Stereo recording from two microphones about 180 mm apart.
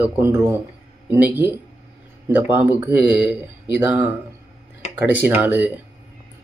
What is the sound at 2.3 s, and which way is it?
Speech, 10° right (ahead or behind).